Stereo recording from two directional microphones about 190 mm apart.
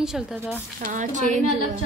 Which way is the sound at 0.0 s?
Centre (ahead or behind).